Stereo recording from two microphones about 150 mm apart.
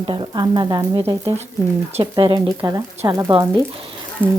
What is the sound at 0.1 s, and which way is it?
Speech, 30° right (ahead or behind).